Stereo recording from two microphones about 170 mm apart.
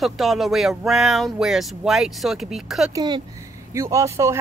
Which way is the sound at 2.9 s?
25° right (ahead or behind).